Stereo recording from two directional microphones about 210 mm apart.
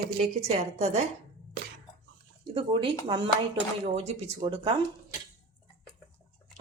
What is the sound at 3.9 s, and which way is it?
Speech, 30° right (ahead or behind).